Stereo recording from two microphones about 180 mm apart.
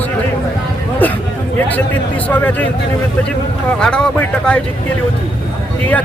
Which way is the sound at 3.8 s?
5° left (ahead or behind).